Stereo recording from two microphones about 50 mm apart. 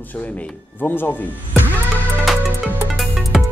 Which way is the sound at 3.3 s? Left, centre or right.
Centre.